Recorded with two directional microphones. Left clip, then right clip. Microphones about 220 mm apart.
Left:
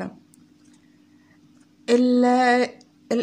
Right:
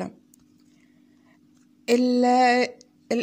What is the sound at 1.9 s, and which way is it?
Speech, 20° right (ahead or behind).